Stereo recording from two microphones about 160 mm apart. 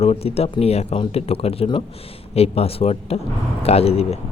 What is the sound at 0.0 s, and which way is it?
Speech, 40° left (ahead or behind).